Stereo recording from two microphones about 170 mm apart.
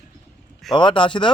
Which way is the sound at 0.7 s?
30° left (ahead or behind).